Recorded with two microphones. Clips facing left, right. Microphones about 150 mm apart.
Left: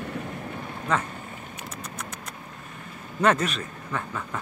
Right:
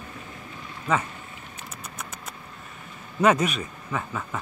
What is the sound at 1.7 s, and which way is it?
Vehicle, 5° right (ahead or behind).